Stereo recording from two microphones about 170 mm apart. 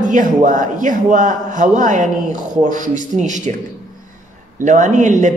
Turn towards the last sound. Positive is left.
turn(degrees=-45)  # may be behind; listen again after turning